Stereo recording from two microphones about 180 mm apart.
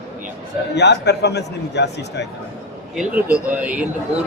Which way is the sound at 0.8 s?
70° left (ahead or behind).